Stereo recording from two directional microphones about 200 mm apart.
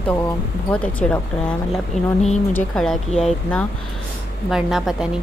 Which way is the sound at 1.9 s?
35° left (ahead or behind).